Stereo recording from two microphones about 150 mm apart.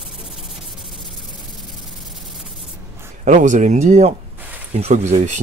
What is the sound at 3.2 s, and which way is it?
Speech, 55° right (ahead or behind).